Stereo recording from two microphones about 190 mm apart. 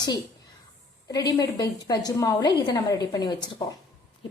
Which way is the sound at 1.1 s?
20° left (ahead or behind).